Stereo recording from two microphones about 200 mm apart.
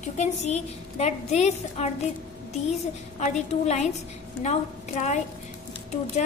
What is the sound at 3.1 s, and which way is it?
A woman's voice, 35° left (ahead or behind).